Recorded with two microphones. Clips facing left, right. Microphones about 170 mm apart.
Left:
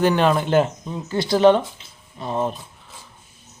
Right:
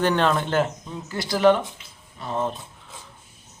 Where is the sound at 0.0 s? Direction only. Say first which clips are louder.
Left 3 dB; 10° left (ahead or behind).